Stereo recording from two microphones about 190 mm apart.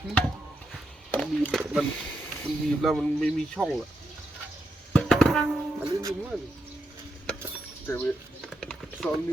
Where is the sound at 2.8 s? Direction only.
Centre (ahead or behind).